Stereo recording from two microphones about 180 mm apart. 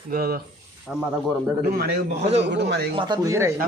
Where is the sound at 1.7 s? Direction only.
55° right (ahead or behind).